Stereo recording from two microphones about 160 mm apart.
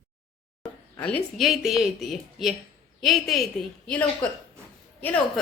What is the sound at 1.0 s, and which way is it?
A woman's voice, 5° left (ahead or behind).